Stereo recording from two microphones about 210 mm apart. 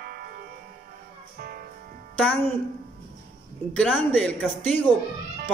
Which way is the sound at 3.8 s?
5° left (ahead or behind).